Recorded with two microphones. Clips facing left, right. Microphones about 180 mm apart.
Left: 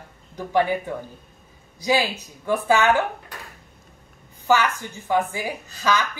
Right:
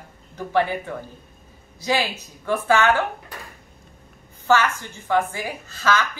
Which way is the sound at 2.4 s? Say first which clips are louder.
Even; 15° left (ahead or behind).